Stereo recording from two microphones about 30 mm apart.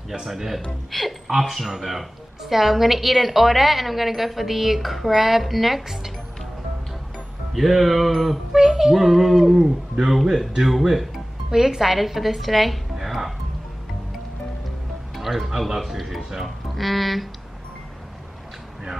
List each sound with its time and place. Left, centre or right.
0.9 s a woman's voice: centre
7.5 s a woman's voice: centre
8.1 s a sound: centre
8.5 s a woman's voice: centre
11.5 s a woman's voice: centre
12.9 s music: centre
15.1 s a woman's voice: centre
16.4 s speech: centre